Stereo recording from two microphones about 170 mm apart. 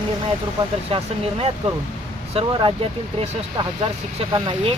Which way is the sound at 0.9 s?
35° right (ahead or behind).